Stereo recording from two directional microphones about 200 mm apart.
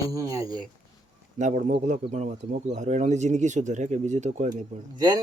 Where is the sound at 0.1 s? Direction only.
15° right (ahead or behind).